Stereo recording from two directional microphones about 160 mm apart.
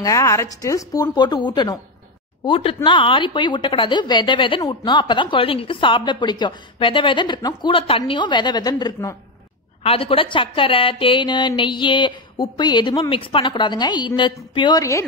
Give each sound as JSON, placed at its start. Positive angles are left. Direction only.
{"t": 0.0, "sound": "speech", "side_deg": 20}